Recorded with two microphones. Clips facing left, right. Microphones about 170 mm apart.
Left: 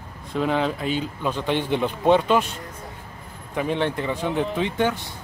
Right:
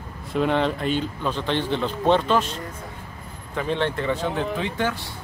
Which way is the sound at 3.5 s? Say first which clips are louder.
Left 1 dB; 15° left (ahead or behind).